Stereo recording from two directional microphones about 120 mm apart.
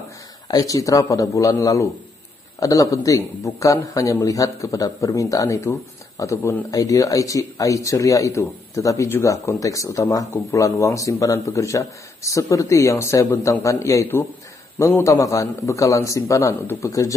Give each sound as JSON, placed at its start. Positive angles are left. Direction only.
{"t": 0.5, "sound": "speech", "side_deg": 30}